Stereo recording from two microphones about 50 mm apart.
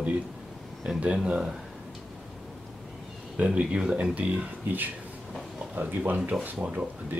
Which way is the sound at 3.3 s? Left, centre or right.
Right.